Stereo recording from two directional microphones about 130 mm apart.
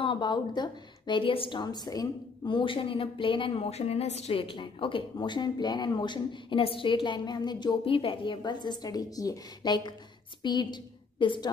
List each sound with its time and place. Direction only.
0.0 s a woman's voice: 40° left (ahead or behind)